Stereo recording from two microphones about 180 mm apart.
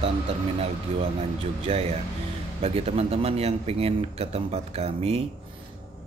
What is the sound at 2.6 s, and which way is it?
A man's voice, 35° right (ahead or behind).